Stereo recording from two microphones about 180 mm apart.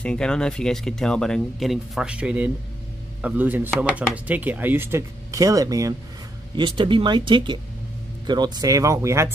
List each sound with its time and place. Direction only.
0.0 s speech: 5° left (ahead or behind); by 9.3 s 15° right (ahead or behind)